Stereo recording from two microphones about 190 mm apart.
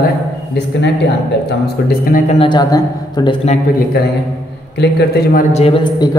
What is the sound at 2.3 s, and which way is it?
A man's voice, 25° left (ahead or behind).